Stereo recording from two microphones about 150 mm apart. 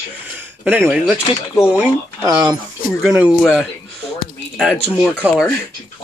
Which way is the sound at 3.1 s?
10° right (ahead or behind).